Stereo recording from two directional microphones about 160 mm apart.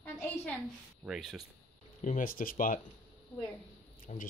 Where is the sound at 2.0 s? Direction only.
55° left (ahead or behind).